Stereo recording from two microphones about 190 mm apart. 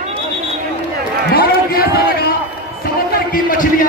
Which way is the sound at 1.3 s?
50° left (ahead or behind).